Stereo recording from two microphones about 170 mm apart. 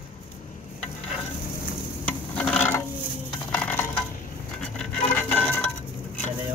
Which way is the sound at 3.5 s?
10° left (ahead or behind).